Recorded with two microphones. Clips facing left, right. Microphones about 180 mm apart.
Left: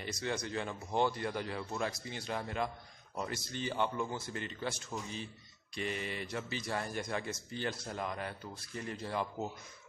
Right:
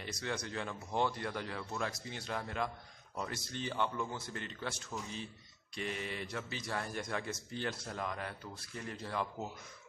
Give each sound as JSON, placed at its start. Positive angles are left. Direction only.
{"t": 0.0, "sound": "speech", "side_deg": 0}